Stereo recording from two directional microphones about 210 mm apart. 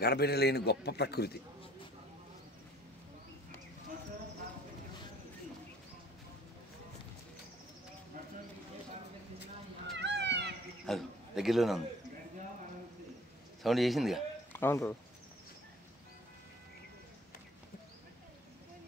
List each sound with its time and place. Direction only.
0.0 s a man's voice: 50° left (ahead or behind)
9.9 s cat: 55° right (ahead or behind)
10.9 s a man's voice: centre (ahead or behind)
13.6 s a man's voice: centre (ahead or behind)
14.6 s speech: 10° left (ahead or behind)